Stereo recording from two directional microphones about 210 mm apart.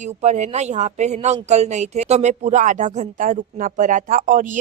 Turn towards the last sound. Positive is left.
turn(degrees=-35)  # may be behind; listen again after turning